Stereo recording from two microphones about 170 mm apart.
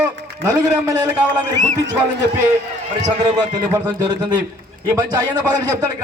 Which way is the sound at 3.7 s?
25° right (ahead or behind).